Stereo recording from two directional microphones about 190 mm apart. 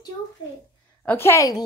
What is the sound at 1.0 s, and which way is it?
Speech, 10° left (ahead or behind).